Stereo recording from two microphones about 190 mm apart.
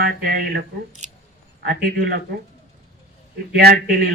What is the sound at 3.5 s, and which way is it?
Speech, 55° right (ahead or behind).